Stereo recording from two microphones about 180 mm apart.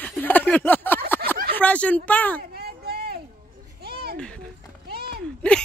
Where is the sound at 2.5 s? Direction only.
60° right (ahead or behind).